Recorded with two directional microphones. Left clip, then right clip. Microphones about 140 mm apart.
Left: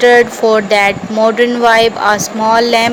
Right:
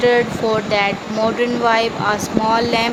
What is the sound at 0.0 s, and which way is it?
Speech, 40° left (ahead or behind).